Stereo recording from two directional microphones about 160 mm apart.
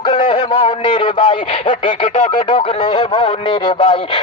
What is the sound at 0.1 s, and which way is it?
A man's voice, 30° left (ahead or behind).